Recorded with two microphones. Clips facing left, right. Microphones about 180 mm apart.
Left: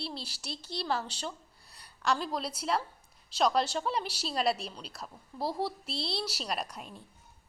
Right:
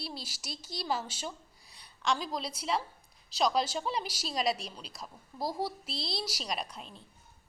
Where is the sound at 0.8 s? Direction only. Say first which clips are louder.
Left 1 dB; 5° right (ahead or behind).